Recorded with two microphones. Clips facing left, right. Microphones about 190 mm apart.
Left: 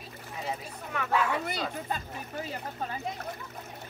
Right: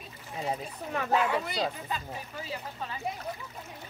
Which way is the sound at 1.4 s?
50° left (ahead or behind).